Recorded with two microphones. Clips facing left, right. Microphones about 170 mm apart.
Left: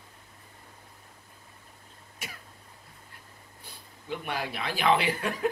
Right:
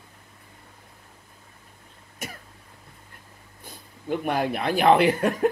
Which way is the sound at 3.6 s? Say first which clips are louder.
Right 8 dB; 50° right (ahead or behind).